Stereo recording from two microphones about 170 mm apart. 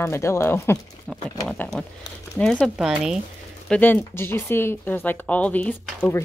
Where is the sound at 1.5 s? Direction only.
5° left (ahead or behind).